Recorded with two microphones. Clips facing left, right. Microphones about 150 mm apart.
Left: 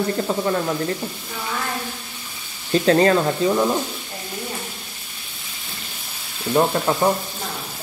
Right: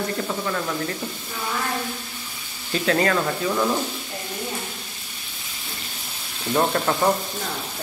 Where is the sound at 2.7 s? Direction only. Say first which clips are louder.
Left 6 dB; 35° left (ahead or behind).